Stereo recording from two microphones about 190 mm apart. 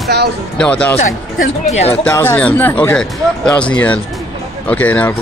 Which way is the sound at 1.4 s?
35° left (ahead or behind).